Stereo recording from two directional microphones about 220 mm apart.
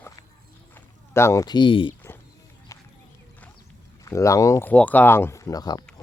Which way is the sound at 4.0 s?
15° left (ahead or behind).